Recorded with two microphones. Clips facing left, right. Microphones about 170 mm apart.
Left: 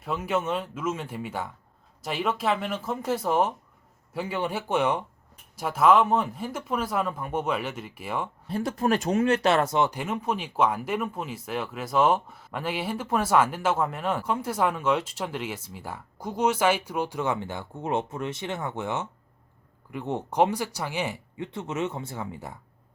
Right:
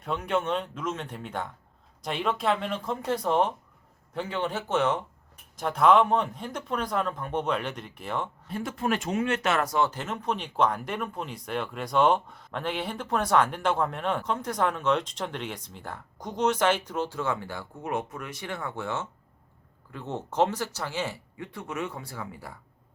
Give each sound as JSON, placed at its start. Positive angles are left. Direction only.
{"t": 0.0, "sound": "speech", "side_deg": 5}
{"t": 8.4, "sound": "speech", "side_deg": 35}